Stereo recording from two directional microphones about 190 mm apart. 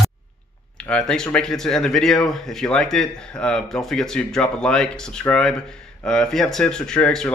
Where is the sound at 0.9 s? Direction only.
5° left (ahead or behind).